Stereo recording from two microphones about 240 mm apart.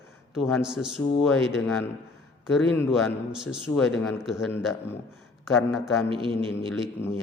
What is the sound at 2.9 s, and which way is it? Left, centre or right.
A man's voice, centre.